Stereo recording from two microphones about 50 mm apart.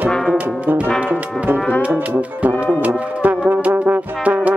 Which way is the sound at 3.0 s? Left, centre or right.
Right.